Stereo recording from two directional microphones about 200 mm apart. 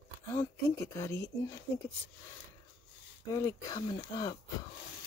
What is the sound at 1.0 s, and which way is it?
Speech, 15° left (ahead or behind).